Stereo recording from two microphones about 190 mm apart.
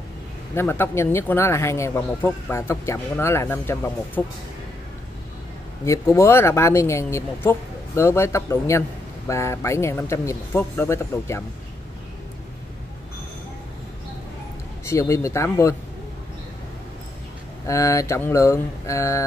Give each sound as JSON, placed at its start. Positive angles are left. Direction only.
{"t": 0.6, "sound": "a man's voice", "side_deg": 10}
{"t": 5.9, "sound": "a man's voice", "side_deg": 15}
{"t": 14.9, "sound": "a man's voice", "side_deg": 15}
{"t": 17.6, "sound": "a man's voice", "side_deg": 15}